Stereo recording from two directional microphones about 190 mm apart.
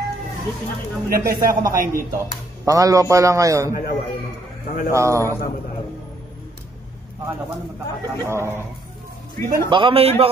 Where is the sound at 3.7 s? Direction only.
50° left (ahead or behind).